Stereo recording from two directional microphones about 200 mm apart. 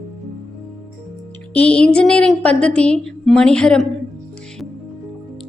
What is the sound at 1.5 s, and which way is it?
A woman's voice, 5° left (ahead or behind).